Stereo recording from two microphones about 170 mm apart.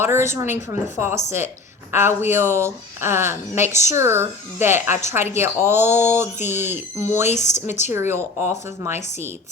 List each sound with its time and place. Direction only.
0.0 s speech: 15° right (ahead or behind)
7.3 s a woman's voice: 45° left (ahead or behind)
7.7 s speech: 15° right (ahead or behind)